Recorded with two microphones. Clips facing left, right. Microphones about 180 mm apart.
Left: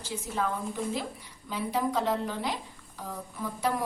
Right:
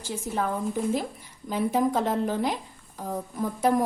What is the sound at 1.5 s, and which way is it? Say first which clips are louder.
A woman's voice: right 6 dB; 45° right (ahead or behind).